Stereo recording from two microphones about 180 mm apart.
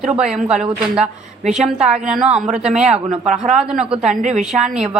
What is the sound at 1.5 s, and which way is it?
Speech, 35° right (ahead or behind).